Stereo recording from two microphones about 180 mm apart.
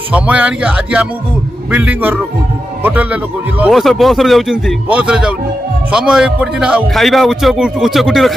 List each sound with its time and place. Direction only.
0.1 s a man's voice: 5° right (ahead or behind)